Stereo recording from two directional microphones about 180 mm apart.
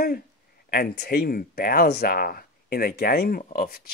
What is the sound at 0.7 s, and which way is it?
Speech, 55° left (ahead or behind).